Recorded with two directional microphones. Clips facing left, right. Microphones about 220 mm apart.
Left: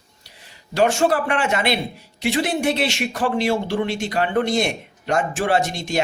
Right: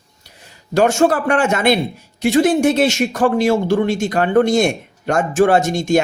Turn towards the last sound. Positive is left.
turn(degrees=-45)  # may be behind; listen again after turning